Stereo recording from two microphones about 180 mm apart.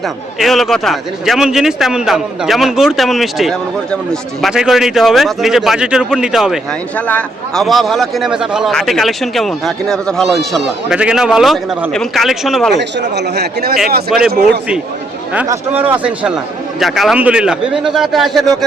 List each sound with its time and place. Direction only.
0.3 s speech: centre (ahead or behind)
12.7 s a man's voice: 70° right (ahead or behind)
15.4 s speech: 10° right (ahead or behind)